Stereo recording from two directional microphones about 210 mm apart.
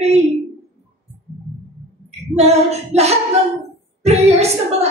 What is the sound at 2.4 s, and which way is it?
A woman's voice, 30° right (ahead or behind).